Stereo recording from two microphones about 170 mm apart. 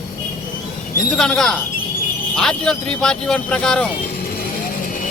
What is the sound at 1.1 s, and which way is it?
Speech, 5° left (ahead or behind).